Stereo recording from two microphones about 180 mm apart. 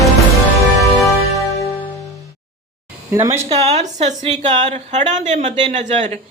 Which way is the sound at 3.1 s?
15° right (ahead or behind).